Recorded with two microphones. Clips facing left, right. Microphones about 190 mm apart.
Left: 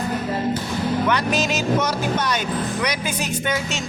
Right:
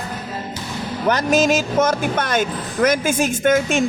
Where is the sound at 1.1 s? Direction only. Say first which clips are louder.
Right 5 dB; 45° right (ahead or behind).